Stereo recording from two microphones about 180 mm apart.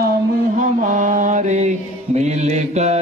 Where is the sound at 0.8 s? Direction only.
45° right (ahead or behind).